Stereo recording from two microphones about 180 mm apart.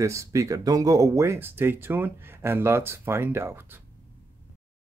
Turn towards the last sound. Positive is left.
turn(degrees=-15)  # may be behind; listen again after turning